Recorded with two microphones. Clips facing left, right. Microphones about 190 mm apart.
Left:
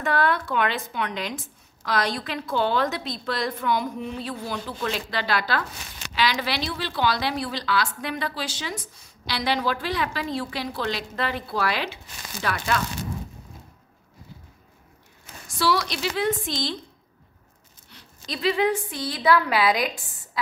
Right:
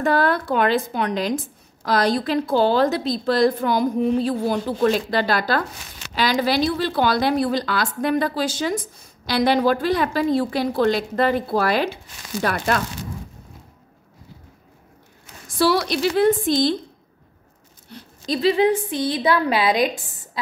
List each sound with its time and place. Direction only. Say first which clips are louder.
0.0 s a woman's voice: right 4 dB; 40° right (ahead or behind)
15.6 s a woman's voice: right 6 dB; 50° right (ahead or behind)
17.9 s a woman's voice: right 10 dB; 40° right (ahead or behind)